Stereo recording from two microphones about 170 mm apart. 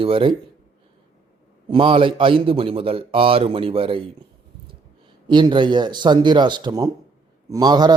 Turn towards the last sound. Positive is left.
turn(degrees=-25)  # may be behind; listen again after turning